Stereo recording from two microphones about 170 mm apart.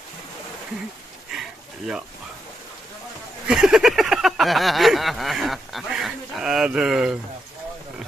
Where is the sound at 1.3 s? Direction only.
5° right (ahead or behind).